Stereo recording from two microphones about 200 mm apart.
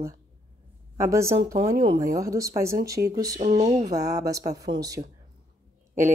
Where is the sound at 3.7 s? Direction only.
20° right (ahead or behind).